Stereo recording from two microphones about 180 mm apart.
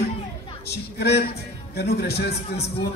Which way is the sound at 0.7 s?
65° left (ahead or behind).